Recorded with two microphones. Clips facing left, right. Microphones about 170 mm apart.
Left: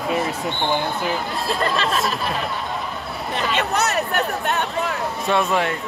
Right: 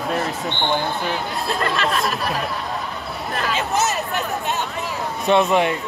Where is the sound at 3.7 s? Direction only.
65° left (ahead or behind).